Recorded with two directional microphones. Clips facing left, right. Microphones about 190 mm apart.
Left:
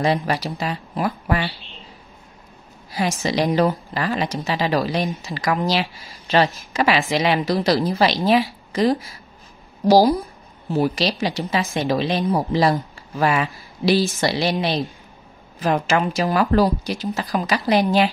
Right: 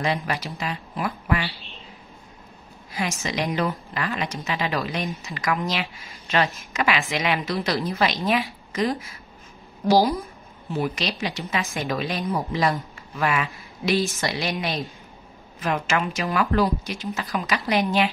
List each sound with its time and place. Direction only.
0.0 s a woman's voice: 35° left (ahead or behind)
2.9 s a woman's voice: 35° left (ahead or behind)